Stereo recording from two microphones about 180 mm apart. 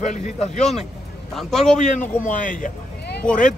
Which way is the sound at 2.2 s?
45° left (ahead or behind).